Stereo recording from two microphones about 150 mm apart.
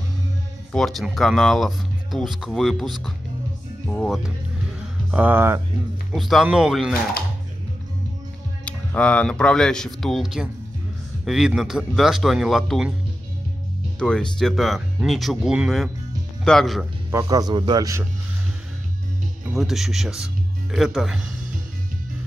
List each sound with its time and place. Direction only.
0.7 s speech: centre (ahead or behind)
5.1 s speech: 10° right (ahead or behind)
6.1 s speech: centre (ahead or behind)
8.6 s speech: 10° left (ahead or behind)
13.9 s speech: 5° left (ahead or behind)
17.1 s a man's voice: 20° right (ahead or behind)
19.5 s speech: centre (ahead or behind)